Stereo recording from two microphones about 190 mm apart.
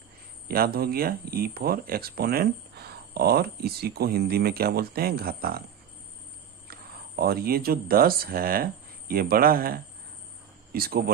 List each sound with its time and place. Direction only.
0.4 s speech: 50° right (ahead or behind)
7.2 s speech: 50° right (ahead or behind)